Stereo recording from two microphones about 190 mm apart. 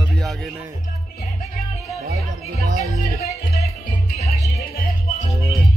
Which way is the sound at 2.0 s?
55° right (ahead or behind).